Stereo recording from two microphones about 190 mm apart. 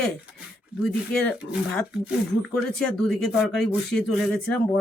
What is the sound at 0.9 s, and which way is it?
Speech, 5° left (ahead or behind).